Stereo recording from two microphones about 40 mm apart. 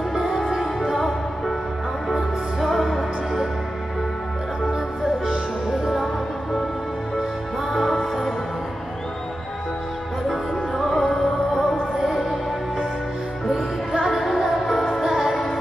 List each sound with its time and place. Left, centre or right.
0.1 s music: centre
2.6 s music: centre
5.2 s music: centre
7.7 s music: centre
10.2 s music: centre
12.0 s music: centre